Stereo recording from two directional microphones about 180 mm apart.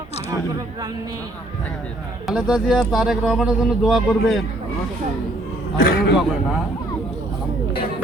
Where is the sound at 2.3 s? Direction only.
5° right (ahead or behind).